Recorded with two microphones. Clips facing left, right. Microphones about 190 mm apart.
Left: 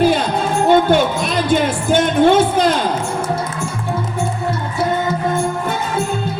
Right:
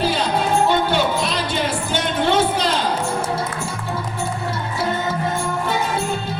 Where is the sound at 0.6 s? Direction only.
50° left (ahead or behind).